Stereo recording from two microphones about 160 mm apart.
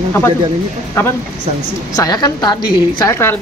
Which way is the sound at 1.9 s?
20° left (ahead or behind).